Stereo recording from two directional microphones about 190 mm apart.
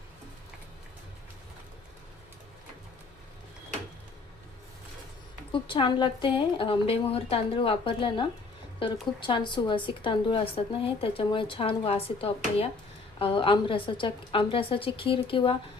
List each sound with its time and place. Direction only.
5.5 s a woman's voice: 25° left (ahead or behind)